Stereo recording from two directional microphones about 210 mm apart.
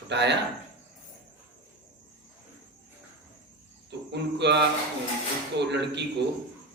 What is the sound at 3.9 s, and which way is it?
Music, 55° right (ahead or behind).